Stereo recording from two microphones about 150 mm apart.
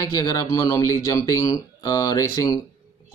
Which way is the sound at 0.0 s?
25° left (ahead or behind).